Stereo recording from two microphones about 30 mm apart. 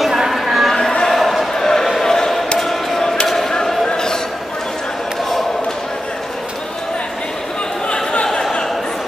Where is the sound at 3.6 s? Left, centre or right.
Centre.